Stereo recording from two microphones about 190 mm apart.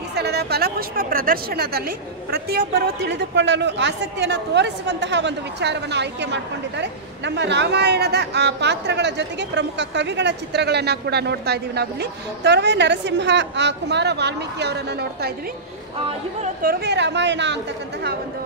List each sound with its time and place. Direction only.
0.1 s a woman's voice: 60° right (ahead or behind)
16.6 s a woman's voice: 60° right (ahead or behind)